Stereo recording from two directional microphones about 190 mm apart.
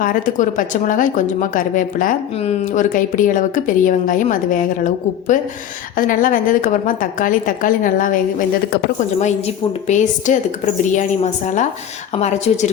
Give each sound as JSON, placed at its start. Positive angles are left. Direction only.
{"t": 0.0, "sound": "a woman's voice", "side_deg": 45}
{"t": 6.0, "sound": "a woman's voice", "side_deg": 45}
{"t": 9.8, "sound": "a woman's voice", "side_deg": 40}